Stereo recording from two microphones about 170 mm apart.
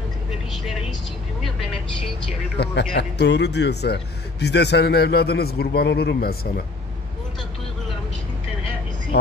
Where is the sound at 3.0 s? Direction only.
85° left; by 6.6 s 60° left (ahead or behind).